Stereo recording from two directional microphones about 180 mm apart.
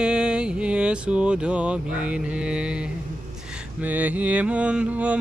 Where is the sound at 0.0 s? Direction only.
5° right (ahead or behind).